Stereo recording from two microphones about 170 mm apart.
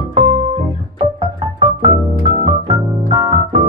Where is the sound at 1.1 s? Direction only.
25° right (ahead or behind).